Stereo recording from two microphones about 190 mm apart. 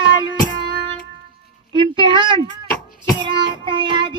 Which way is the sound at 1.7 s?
25° right (ahead or behind).